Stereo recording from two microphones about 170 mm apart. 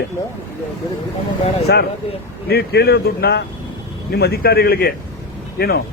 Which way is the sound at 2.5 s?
75° left (ahead or behind).